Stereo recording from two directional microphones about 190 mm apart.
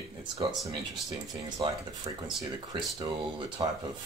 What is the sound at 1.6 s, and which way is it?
Speech, 25° right (ahead or behind).